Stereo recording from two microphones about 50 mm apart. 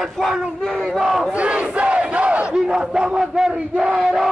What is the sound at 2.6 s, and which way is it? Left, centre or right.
Battle cry, centre.